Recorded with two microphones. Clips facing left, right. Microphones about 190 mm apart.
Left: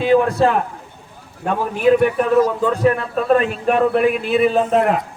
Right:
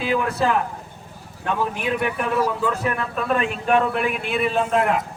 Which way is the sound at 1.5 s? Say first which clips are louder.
Left 8 dB; 40° left (ahead or behind).